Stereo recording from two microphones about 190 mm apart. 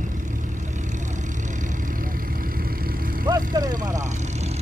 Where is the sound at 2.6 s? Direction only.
50° right (ahead or behind).